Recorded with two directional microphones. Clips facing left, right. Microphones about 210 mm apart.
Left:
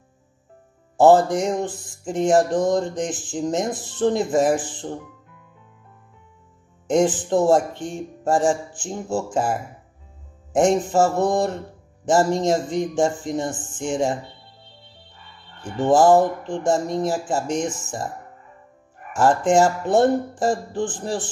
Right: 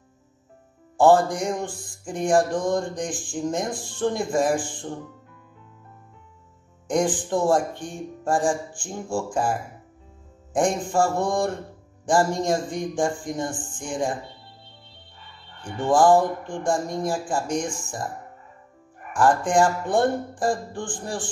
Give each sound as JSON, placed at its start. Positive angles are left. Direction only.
{"t": 0.9, "sound": "mantra", "side_deg": 20}
{"t": 6.9, "sound": "mantra", "side_deg": 25}
{"t": 15.9, "sound": "mantra", "side_deg": 25}
{"t": 19.1, "sound": "mantra", "side_deg": 25}